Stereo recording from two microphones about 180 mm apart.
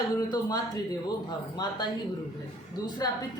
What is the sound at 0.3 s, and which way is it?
Speech, 20° left (ahead or behind).